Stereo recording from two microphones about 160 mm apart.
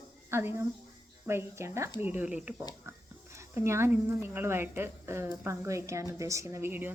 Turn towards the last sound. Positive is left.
turn(degrees=-15)  # may be behind; listen again after turning